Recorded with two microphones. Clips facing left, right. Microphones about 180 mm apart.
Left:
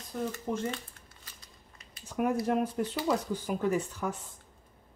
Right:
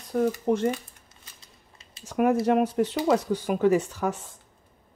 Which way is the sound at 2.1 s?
90° right.